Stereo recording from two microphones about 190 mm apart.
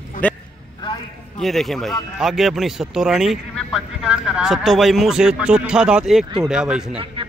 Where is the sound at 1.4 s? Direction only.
Centre (ahead or behind).